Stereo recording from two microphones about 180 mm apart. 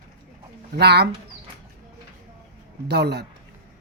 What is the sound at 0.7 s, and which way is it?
Speech, 65° right (ahead or behind).